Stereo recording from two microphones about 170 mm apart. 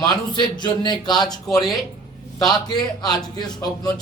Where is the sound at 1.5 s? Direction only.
Centre (ahead or behind).